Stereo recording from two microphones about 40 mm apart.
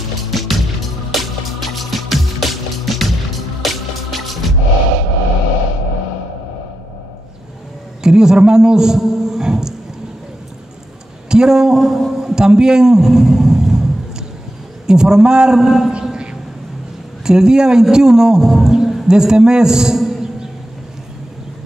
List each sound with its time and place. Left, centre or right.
0.3 s music: centre
8.0 s a man's voice: centre
11.2 s speech: centre
12.1 s a sound: centre
14.9 s a man's voice: centre
17.2 s a man's voice: centre